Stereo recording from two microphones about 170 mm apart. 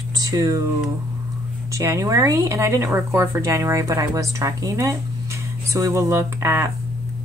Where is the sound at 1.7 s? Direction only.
20° right (ahead or behind).